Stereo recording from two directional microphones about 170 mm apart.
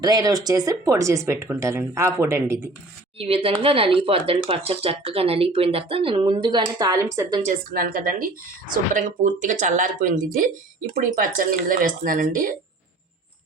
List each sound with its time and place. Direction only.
0.0 s speech: 20° right (ahead or behind)
3.2 s speech: 35° right (ahead or behind)
7.4 s a woman's voice: 60° right (ahead or behind)